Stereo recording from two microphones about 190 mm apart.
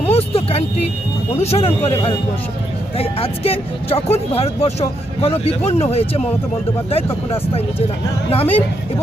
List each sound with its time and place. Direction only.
0.1 s a sound: 30° left (ahead or behind)
1.4 s speech: 35° left (ahead or behind)
8.3 s speech: 30° left (ahead or behind)